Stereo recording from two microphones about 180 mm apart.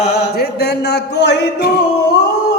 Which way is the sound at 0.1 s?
65° left (ahead or behind).